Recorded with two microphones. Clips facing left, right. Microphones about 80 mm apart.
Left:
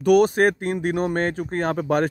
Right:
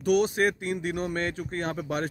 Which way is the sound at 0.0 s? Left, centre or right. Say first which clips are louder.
Left 7 dB; left.